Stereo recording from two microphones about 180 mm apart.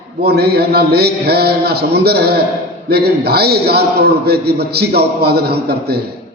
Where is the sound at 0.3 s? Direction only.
60° right (ahead or behind).